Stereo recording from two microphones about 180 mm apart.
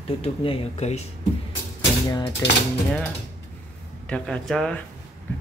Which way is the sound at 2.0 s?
20° left (ahead or behind).